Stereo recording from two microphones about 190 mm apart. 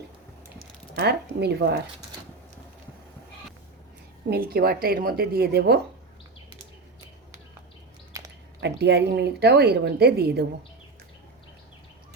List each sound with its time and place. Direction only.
0.9 s speech: 60° right (ahead or behind)
4.3 s a woman's voice: 55° right (ahead or behind)
8.1 s a sound: 15° right (ahead or behind)
8.6 s speech: 60° right (ahead or behind)